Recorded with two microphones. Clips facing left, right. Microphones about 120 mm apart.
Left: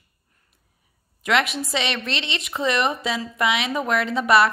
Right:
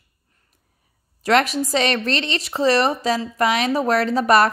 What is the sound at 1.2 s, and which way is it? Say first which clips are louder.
Speech: right 4 dB; 40° right (ahead or behind).